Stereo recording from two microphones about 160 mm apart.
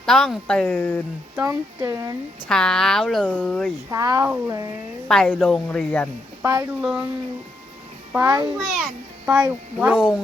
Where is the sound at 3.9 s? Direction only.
20° right (ahead or behind).